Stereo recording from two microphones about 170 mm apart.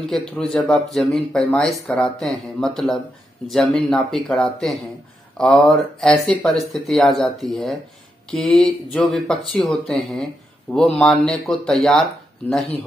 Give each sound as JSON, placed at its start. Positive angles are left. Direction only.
{"t": 0.0, "sound": "speech", "side_deg": 5}